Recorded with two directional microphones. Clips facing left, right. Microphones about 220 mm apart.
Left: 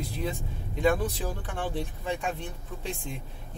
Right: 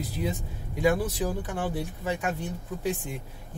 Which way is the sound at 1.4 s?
10° right (ahead or behind).